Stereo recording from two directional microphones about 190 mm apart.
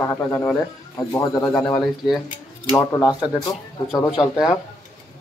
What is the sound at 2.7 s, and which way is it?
Speech, 20° left (ahead or behind).